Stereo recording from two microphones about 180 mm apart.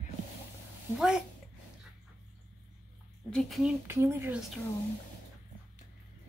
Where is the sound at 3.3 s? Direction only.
Centre (ahead or behind).